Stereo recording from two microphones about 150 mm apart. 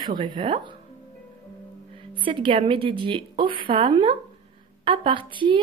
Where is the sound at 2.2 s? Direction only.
35° right (ahead or behind).